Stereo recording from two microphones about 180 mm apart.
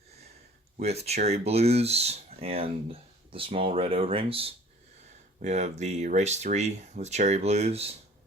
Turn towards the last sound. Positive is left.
turn(degrees=-35)  # may be behind; listen again after turning